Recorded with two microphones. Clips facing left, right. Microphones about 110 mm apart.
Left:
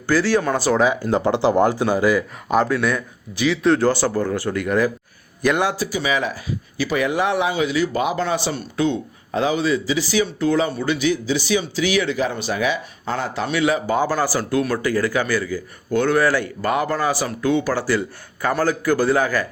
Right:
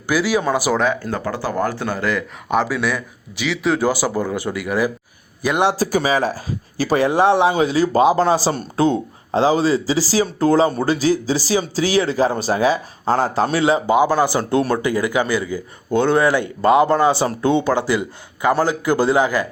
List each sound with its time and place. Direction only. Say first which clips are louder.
0.1 s speech: even; 10° right (ahead or behind)
0.8 s speech: left 1 dB; 5° left (ahead or behind)
1.1 s speech: left 5 dB; 20° left (ahead or behind); by 4.9 s 5° right (ahead or behind)
5.7 s speech: right 4 dB; 40° right (ahead or behind)
13.9 s speech: right 4 dB; 15° right (ahead or behind)